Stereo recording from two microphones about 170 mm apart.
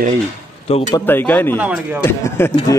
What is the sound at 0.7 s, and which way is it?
Speech, 35° left (ahead or behind).